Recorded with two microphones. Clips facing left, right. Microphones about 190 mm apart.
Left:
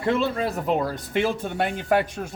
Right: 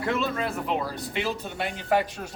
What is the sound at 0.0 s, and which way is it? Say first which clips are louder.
A man's voice: left 4 dB; 30° left (ahead or behind).